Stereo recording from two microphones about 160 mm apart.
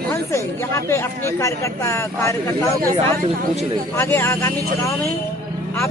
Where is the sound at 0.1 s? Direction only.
15° left (ahead or behind).